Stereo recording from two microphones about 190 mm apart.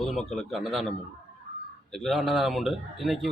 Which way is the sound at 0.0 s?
Centre (ahead or behind).